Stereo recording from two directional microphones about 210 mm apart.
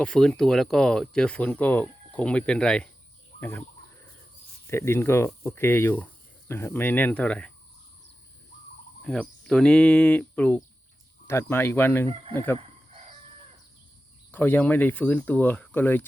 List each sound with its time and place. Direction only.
0.0 s speech: 5° left (ahead or behind)
4.6 s speech: 10° left (ahead or behind)
9.0 s speech: 5° left (ahead or behind)
12.5 s chicken: 30° right (ahead or behind)
14.3 s speech: 10° left (ahead or behind)